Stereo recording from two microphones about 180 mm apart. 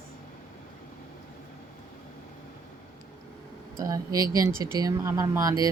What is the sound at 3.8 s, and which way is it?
Speech, 20° right (ahead or behind).